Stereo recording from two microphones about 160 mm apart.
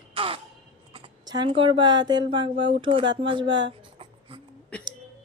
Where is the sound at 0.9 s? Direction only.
30° right (ahead or behind).